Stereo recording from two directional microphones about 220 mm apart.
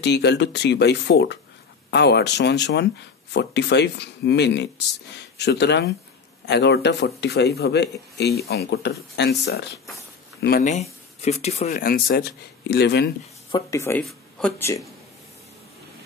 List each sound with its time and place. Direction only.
0.0 s speech: 50° left (ahead or behind)
13.5 s speech: 15° left (ahead or behind)